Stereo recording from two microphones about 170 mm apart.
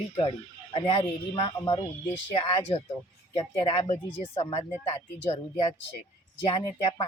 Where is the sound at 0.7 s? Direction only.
30° left (ahead or behind).